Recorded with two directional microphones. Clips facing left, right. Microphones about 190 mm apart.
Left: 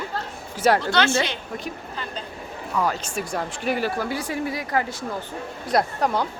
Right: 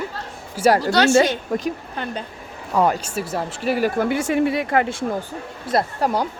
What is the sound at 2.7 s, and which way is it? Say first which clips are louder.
Speech: right 6 dB; 35° right (ahead or behind).